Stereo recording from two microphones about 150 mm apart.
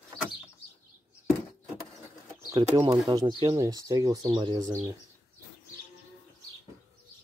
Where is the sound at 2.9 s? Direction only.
25° right (ahead or behind).